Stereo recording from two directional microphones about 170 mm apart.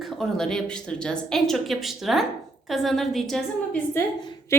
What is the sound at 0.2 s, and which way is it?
A woman's voice, 5° left (ahead or behind).